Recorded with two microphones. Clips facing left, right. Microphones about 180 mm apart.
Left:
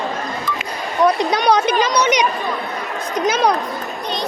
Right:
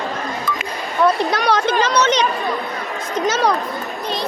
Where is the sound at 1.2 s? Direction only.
15° left (ahead or behind).